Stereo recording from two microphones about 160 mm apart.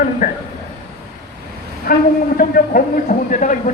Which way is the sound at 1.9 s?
60° left (ahead or behind).